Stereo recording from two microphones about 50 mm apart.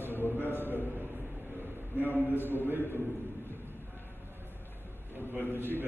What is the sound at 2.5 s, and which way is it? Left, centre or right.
Speech, right.